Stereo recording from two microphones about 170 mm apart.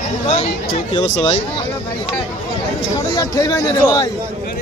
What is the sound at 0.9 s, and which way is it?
Speech, 35° left (ahead or behind).